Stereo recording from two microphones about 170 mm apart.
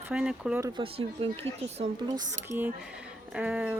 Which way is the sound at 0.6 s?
30° right (ahead or behind).